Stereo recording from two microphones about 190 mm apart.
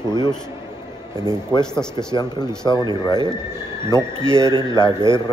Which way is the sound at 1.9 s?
20° left (ahead or behind).